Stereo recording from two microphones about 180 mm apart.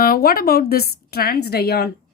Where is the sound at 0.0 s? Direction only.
55° left (ahead or behind).